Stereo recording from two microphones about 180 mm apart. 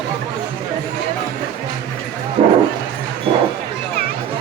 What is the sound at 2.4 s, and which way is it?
Speech, 40° right (ahead or behind).